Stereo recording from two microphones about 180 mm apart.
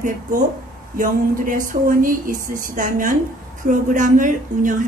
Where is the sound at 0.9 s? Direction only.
50° right (ahead or behind).